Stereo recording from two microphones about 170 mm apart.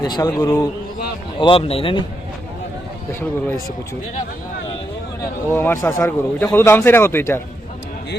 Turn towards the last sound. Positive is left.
turn(degrees=15)  # may be behind; listen again after turning